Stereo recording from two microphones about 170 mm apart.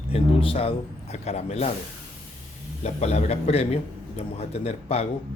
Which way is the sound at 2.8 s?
40° left (ahead or behind).